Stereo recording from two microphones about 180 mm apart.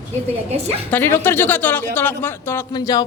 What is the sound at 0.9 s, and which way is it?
Speech, 10° left (ahead or behind).